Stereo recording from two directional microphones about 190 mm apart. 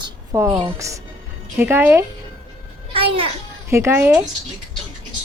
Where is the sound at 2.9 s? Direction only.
30° right (ahead or behind).